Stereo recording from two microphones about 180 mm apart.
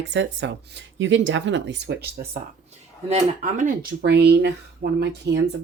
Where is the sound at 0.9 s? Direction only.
90° right; by 2.4 s 60° right (ahead or behind).